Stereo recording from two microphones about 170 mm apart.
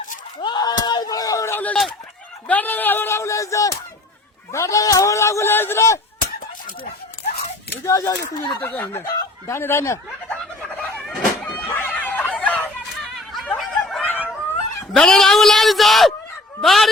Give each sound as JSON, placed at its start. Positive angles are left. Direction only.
{"t": 0.4, "sound": "a sound", "side_deg": 25}
{"t": 2.5, "sound": "speech", "side_deg": 10}
{"t": 7.9, "sound": "speech", "side_deg": 20}
{"t": 10.3, "sound": "a sound", "side_deg": 5}
{"t": 13.6, "sound": "snicker", "side_deg": 5}
{"t": 14.9, "sound": "a man's voice", "side_deg": 0}